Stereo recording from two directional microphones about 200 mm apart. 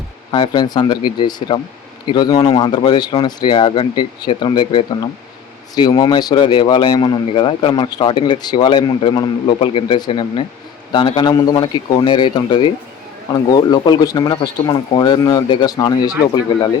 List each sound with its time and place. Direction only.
0.3 s speech: 25° left (ahead or behind)